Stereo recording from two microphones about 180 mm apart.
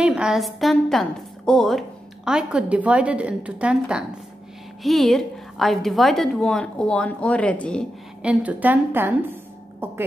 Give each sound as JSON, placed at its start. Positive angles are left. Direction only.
{"t": 0.0, "sound": "a woman's voice", "side_deg": -5}
{"t": 8.2, "sound": "a woman's voice", "side_deg": -5}